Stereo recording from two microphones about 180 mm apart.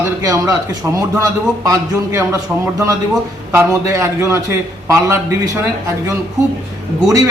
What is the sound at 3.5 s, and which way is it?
A man's voice, 15° right (ahead or behind).